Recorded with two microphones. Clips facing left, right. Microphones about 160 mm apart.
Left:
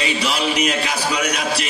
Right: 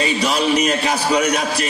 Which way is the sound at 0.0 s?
40° right (ahead or behind).